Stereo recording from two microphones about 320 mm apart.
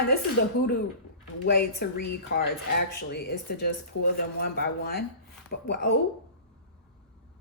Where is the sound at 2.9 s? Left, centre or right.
Left.